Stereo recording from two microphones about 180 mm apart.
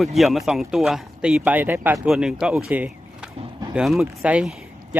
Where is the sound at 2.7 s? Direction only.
10° right (ahead or behind).